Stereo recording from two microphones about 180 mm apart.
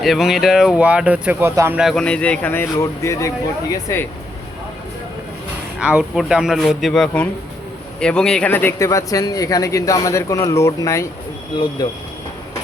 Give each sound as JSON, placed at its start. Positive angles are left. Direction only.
{"t": 0.0, "sound": "speech", "side_deg": 0}
{"t": 1.8, "sound": "a man's voice", "side_deg": 0}
{"t": 5.8, "sound": "a man's voice", "side_deg": -5}